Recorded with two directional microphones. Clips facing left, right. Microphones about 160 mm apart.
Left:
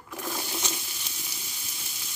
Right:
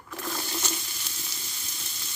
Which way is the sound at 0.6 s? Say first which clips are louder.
Even; 5° left (ahead or behind).